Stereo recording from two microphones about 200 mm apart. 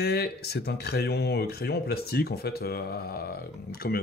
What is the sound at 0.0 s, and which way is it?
Speech, 50° left (ahead or behind).